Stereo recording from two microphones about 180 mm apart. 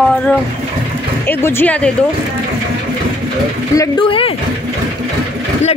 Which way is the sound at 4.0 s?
30° left (ahead or behind).